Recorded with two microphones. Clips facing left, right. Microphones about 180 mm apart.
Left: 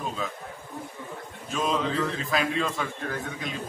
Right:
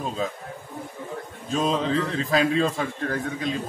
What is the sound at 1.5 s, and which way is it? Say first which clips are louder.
A man's voice: right 4 dB; 35° right (ahead or behind).